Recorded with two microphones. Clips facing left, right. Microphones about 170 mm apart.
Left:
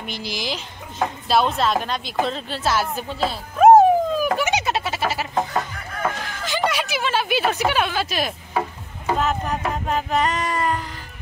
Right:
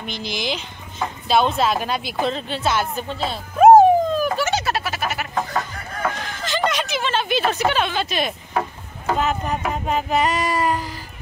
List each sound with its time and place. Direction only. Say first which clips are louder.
0.0 s a woman's voice: right 2 dB; 5° left (ahead or behind)
4.4 s a sound: even; 15° left (ahead or behind)
6.4 s speech: right 1 dB; 10° left (ahead or behind); by 10.8 s 10° right (ahead or behind)